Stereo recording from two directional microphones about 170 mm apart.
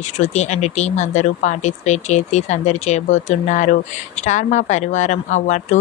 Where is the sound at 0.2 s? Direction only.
45° left (ahead or behind).